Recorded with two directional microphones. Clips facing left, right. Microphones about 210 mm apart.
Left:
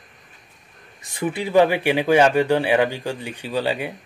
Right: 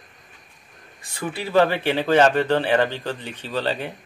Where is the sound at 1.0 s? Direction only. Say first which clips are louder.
Left 4 dB; 20° left (ahead or behind).